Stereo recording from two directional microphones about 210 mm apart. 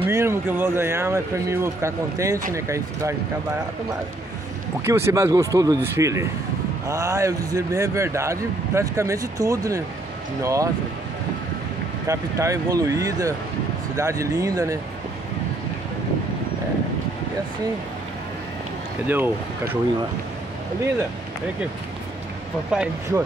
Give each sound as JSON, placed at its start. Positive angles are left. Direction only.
{"t": 0.0, "sound": "speech", "side_deg": -10}
{"t": 4.8, "sound": "speech", "side_deg": -10}
{"t": 12.1, "sound": "speech", "side_deg": -15}
{"t": 19.0, "sound": "speech", "side_deg": -10}
{"t": 22.7, "sound": "speech", "side_deg": -5}